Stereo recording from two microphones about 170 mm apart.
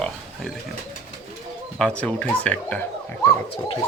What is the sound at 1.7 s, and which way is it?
Speech, 5° left (ahead or behind).